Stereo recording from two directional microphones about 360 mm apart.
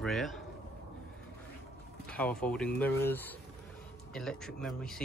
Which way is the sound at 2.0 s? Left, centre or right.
Centre.